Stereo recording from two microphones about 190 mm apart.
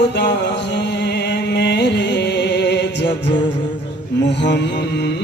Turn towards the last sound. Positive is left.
turn(degrees=65)  # may be behind; listen again after turning